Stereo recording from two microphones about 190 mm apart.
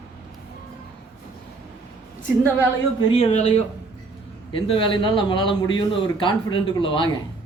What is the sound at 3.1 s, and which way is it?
A man's voice, 35° left (ahead or behind).